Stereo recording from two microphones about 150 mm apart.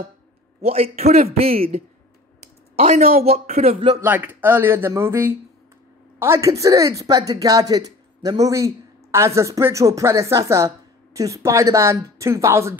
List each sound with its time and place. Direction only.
0.6 s a man's voice: 40° right (ahead or behind)
2.7 s a man's voice: 40° right (ahead or behind)
4.0 s speech: 15° right (ahead or behind)